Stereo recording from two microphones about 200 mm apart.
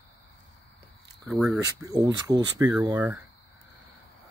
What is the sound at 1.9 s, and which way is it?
Speech, 20° right (ahead or behind).